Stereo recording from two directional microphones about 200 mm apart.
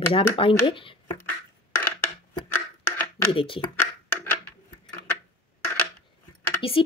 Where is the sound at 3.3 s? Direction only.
25° left (ahead or behind).